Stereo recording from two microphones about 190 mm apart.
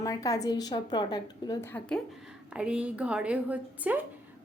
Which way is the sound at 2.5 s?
5° right (ahead or behind).